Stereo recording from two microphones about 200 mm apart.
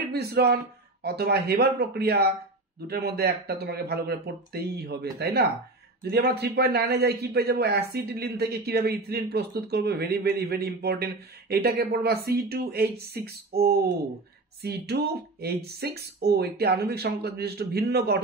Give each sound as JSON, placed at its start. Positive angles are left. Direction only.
{"t": 0.1, "sound": "a man's voice", "side_deg": -50}